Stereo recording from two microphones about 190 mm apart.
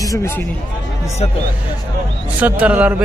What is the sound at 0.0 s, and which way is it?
Speech, 15° left (ahead or behind).